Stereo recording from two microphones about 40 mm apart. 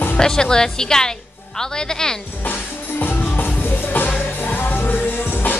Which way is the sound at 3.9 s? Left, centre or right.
Left.